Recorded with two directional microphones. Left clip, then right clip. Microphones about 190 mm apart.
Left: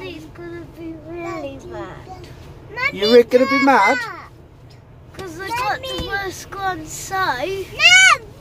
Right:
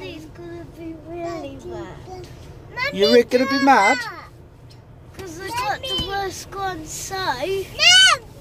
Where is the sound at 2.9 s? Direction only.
20° right (ahead or behind).